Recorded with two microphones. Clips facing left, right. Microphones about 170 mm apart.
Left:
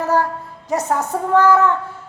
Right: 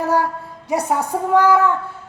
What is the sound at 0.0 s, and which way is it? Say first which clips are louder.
A woman's voice: even; 10° right (ahead or behind).